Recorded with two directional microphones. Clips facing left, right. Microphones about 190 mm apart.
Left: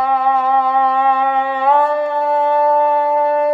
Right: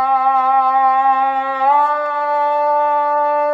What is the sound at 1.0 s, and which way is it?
Music, 25° left (ahead or behind).